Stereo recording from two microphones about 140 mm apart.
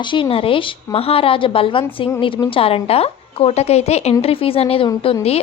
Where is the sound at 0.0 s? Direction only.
35° left (ahead or behind).